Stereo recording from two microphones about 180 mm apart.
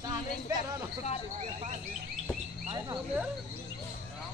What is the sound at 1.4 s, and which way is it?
Speech, 40° right (ahead or behind).